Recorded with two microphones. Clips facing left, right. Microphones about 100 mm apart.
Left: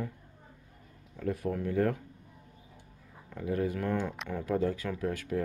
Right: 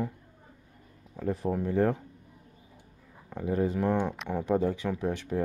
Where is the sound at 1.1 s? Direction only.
30° right (ahead or behind).